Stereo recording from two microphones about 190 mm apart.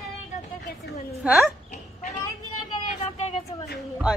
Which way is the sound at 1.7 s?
40° left (ahead or behind).